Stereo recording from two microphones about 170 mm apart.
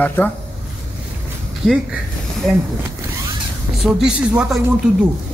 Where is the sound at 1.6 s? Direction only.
5° right (ahead or behind).